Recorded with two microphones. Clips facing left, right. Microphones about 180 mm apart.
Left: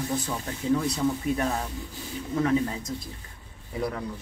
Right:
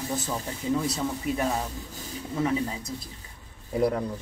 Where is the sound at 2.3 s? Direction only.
5° right (ahead or behind).